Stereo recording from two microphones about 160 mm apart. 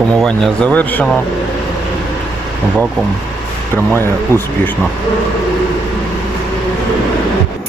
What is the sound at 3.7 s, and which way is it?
Speech, 15° left (ahead or behind).